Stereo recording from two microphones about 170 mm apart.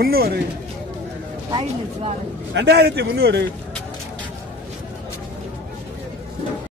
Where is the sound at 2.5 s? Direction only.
75° right (ahead or behind).